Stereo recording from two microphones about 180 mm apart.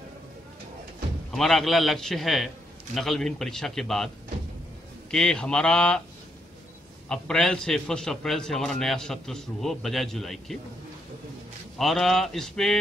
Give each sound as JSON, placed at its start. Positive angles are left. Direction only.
{"t": 1.3, "sound": "a man's voice", "side_deg": 0}
{"t": 5.1, "sound": "a man's voice", "side_deg": 5}
{"t": 7.1, "sound": "a man's voice", "side_deg": 5}
{"t": 11.8, "sound": "a man's voice", "side_deg": 0}